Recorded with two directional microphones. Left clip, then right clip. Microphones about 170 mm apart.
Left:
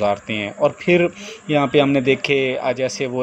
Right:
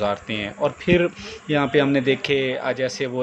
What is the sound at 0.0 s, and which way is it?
Speech, 20° left (ahead or behind).